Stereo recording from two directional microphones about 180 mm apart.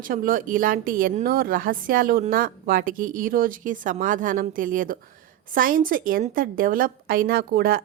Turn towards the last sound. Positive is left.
turn(degrees=-55)  # may be behind; listen again after turning